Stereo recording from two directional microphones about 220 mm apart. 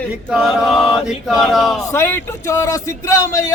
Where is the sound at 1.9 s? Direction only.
10° left (ahead or behind).